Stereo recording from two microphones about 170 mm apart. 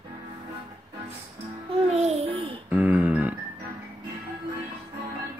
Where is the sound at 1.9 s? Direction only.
40° right (ahead or behind).